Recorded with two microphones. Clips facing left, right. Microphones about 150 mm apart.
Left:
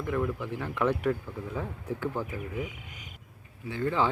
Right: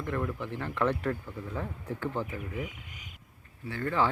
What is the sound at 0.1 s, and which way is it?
Speech, 10° left (ahead or behind).